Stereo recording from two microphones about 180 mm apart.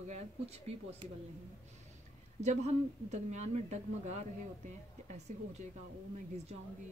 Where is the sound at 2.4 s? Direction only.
40° right (ahead or behind).